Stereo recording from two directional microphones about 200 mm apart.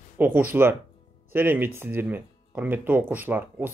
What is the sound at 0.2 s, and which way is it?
Speech, 10° right (ahead or behind).